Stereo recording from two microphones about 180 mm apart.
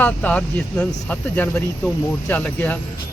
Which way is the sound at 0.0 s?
10° left (ahead or behind).